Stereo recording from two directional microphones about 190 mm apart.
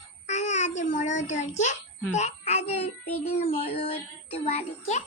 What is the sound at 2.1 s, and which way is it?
Child singing, 35° left (ahead or behind).